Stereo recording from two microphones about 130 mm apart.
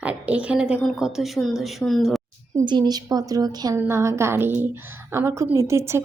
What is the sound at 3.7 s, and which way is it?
A woman's voice, 20° right (ahead or behind).